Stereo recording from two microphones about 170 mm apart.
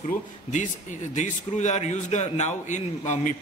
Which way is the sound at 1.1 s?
45° left (ahead or behind).